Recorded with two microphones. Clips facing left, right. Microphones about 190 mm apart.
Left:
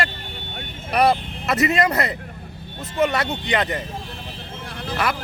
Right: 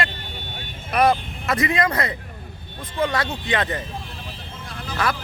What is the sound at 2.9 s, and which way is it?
Speech, 20° left (ahead or behind).